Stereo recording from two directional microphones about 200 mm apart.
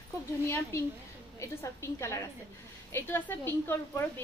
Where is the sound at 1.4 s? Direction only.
15° left (ahead or behind).